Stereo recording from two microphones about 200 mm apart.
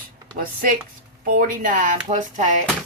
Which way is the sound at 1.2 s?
45° right (ahead or behind).